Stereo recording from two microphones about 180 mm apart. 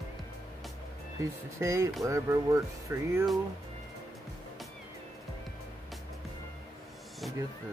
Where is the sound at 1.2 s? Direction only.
15° right (ahead or behind).